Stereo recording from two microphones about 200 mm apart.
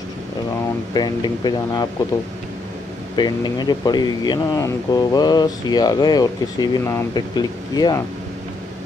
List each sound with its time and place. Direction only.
0.9 s speech: 20° left (ahead or behind)
3.2 s speech: 20° left (ahead or behind)